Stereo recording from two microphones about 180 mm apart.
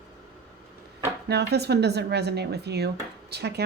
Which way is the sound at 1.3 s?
65° right (ahead or behind).